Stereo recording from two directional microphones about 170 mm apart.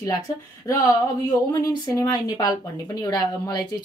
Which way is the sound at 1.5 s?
20° left (ahead or behind).